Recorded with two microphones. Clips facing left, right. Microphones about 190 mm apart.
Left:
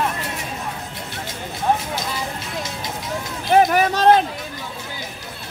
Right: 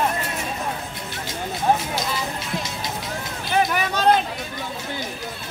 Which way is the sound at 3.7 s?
45° left (ahead or behind).